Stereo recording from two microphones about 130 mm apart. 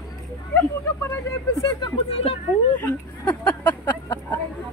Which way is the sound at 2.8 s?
10° left (ahead or behind).